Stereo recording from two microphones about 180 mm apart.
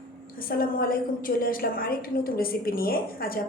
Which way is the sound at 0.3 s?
55° left (ahead or behind).